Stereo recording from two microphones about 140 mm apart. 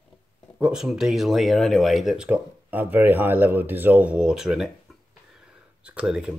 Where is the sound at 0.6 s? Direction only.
5° right (ahead or behind).